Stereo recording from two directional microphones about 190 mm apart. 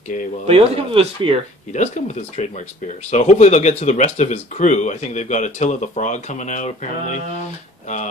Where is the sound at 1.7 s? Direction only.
40° left (ahead or behind).